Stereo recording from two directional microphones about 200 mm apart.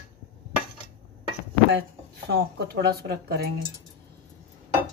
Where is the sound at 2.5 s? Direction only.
50° right (ahead or behind).